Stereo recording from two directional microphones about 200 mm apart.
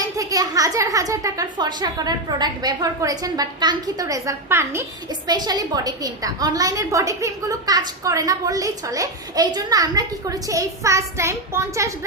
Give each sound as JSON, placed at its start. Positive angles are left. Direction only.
{"t": 0.0, "sound": "a woman's voice", "side_deg": -15}